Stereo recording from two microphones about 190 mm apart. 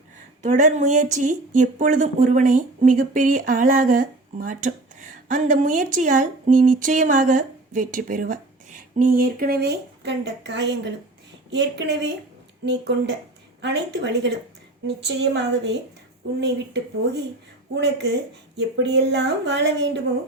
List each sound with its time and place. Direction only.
0.4 s speech: 40° right (ahead or behind); by 12.1 s 65° right (ahead or behind)
13.6 s speech: 65° right (ahead or behind)